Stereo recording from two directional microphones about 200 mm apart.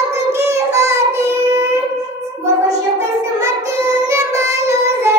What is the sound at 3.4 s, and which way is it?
Child singing, 15° right (ahead or behind).